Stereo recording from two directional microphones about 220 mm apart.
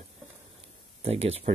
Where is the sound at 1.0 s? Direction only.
25° right (ahead or behind).